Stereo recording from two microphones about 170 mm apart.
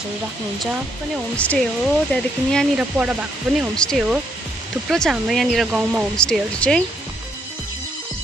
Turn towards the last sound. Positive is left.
turn(degrees=5)  # may be behind; listen again after turning